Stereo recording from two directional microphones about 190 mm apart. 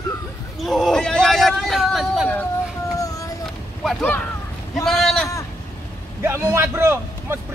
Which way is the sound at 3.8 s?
10° left (ahead or behind).